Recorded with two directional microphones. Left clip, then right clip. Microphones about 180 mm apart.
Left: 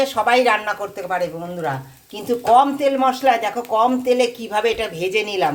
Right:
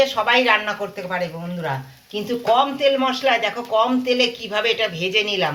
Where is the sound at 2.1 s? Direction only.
65° left (ahead or behind).